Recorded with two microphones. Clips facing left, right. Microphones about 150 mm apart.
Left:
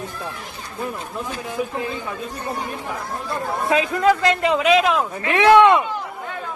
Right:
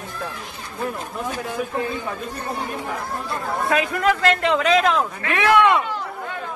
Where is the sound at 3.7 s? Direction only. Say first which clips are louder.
Left 3 dB; 20° left (ahead or behind).